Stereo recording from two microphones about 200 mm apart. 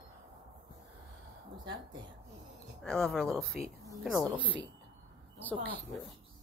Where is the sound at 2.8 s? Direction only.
5° left (ahead or behind).